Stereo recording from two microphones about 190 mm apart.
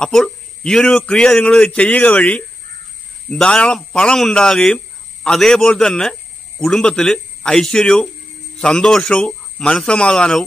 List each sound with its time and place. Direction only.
0.0 s a man's voice: centre (ahead or behind)